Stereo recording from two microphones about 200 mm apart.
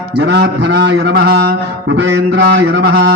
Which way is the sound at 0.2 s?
55° right (ahead or behind).